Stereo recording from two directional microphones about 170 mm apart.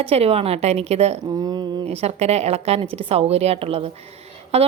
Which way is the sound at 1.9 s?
40° right (ahead or behind).